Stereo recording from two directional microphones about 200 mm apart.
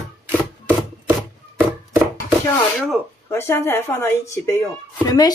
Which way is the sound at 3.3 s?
10° left (ahead or behind).